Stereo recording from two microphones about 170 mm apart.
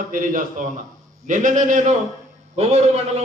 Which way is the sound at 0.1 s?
50° right (ahead or behind).